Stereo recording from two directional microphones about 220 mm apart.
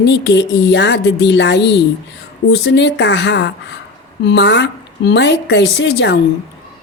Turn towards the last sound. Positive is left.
turn(degrees=55)  # may be behind; listen again after turning